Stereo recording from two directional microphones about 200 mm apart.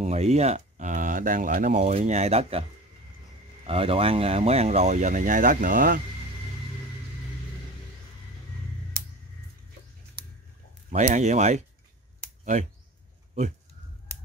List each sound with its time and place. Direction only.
0.0 s speech: 35° right (ahead or behind)
3.6 s speech: 30° right (ahead or behind)
10.9 s speech: 35° right (ahead or behind)